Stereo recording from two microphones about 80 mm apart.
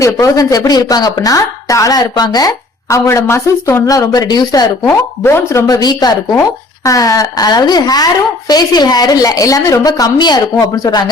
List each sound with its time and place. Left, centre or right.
0.0 s speech: left
2.9 s speech: left
3.8 s speech: left
4.9 s speech: left
5.6 s speech: left
6.4 s speech: left
10.2 s speech: left
10.6 s speech: left